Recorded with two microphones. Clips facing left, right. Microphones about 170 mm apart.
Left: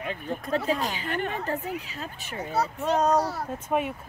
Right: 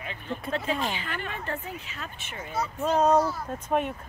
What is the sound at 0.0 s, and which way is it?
Speech, 45° left (ahead or behind).